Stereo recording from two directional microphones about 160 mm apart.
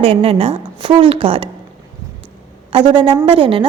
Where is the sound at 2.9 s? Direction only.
30° right (ahead or behind).